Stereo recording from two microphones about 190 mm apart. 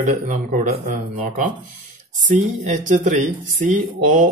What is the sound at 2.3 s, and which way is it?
Speech, 40° right (ahead or behind).